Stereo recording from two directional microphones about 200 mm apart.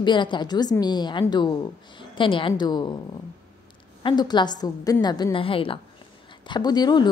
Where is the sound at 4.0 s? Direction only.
20° left (ahead or behind).